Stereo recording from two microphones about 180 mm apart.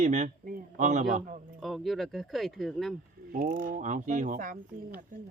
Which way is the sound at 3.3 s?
50° right (ahead or behind).